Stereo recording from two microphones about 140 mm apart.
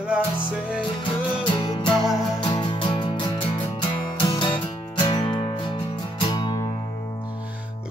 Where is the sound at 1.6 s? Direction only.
35° left (ahead or behind).